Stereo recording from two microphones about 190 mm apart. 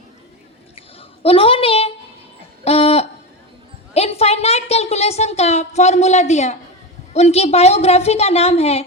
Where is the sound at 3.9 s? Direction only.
35° left (ahead or behind).